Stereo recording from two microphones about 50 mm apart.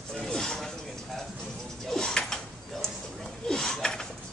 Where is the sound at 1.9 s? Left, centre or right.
Centre.